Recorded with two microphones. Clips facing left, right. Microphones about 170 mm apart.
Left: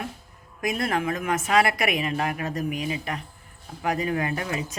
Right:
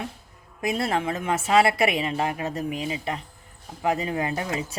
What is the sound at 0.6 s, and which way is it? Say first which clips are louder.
A woman's voice: right 1 dB; 30° right (ahead or behind).